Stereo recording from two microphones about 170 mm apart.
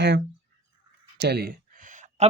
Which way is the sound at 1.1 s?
75° right (ahead or behind).